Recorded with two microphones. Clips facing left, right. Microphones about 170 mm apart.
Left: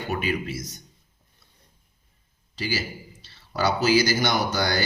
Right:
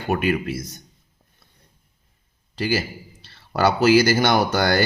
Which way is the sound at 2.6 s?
55° right (ahead or behind).